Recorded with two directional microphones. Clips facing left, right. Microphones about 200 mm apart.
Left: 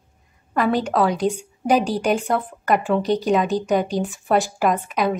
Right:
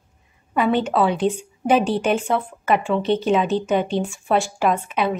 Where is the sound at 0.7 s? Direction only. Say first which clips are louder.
Right 1 dB; centre (ahead or behind).